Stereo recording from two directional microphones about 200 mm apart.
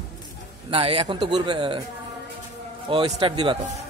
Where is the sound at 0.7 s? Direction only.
30° right (ahead or behind).